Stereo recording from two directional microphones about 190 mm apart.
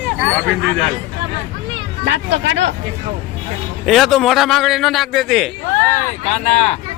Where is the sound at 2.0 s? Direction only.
70° right (ahead or behind).